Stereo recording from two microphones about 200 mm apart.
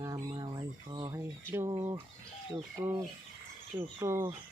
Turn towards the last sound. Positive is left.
turn(degrees=-10)  # may be behind; listen again after turning